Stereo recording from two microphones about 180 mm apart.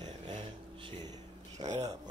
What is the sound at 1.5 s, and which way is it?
Speech, 40° right (ahead or behind).